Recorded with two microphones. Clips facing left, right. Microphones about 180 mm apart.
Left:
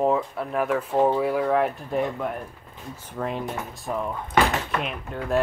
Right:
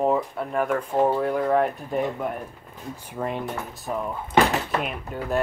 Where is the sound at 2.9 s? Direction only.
10° right (ahead or behind).